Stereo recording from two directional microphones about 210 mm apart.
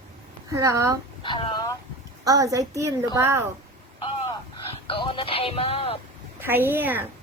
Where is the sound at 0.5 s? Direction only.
15° right (ahead or behind).